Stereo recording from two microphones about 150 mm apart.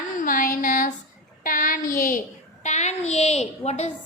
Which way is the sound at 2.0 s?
65° left (ahead or behind).